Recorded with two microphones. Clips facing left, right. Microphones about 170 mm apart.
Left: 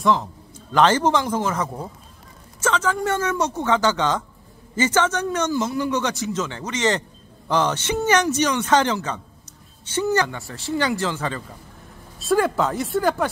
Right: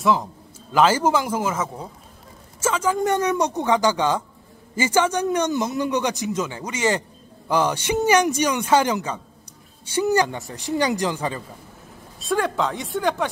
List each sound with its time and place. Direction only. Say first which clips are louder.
0.0 s a man's voice: even; 10° right (ahead or behind)
12.2 s speech: left 3 dB; 5° left (ahead or behind)